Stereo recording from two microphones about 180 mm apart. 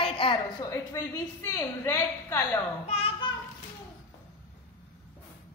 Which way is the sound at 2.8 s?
35° left (ahead or behind).